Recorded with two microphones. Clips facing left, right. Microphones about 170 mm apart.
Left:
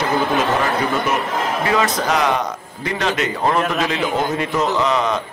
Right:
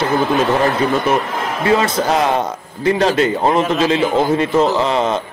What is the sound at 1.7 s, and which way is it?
A man's voice, 30° right (ahead or behind).